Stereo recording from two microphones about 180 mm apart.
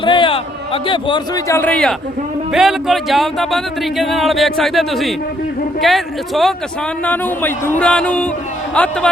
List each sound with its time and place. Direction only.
0.0 s a man's voice: 25° left (ahead or behind)
1.5 s music: 10° left (ahead or behind)
2.5 s speech: centre (ahead or behind)
7.0 s music: 10° left (ahead or behind)